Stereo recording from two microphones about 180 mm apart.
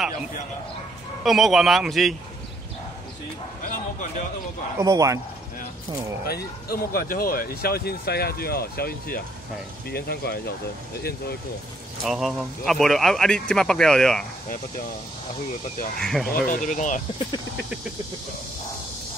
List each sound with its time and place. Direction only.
1.2 s speech: centre (ahead or behind)
4.7 s speech: 20° right (ahead or behind)
6.2 s speech: 60° left (ahead or behind)
12.0 s speech: centre (ahead or behind)
16.0 s speech: centre (ahead or behind)
16.4 s speech: 45° left (ahead or behind)